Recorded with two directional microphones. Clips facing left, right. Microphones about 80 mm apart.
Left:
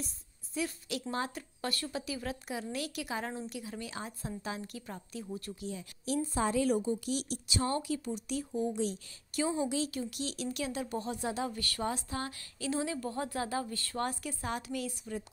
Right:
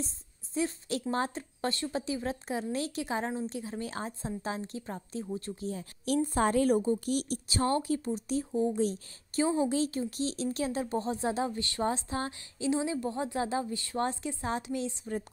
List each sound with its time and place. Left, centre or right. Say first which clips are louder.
0.6 s a woman's voice: right 4 dB; right
6.0 s a woman's voice: right 4 dB; right